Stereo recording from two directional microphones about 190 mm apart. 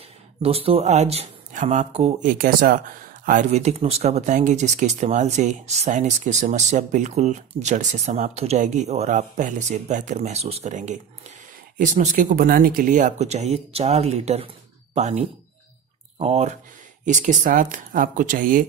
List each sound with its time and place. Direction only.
0.4 s speech: 30° right (ahead or behind)